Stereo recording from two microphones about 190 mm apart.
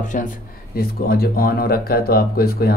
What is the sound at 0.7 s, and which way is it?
A man's voice, 55° left (ahead or behind).